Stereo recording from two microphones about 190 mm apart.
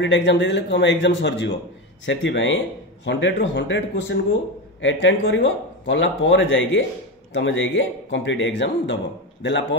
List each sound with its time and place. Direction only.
0.0 s speech: 70° left (ahead or behind)